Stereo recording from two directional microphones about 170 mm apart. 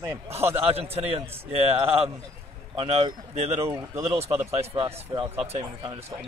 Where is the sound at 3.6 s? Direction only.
15° right (ahead or behind).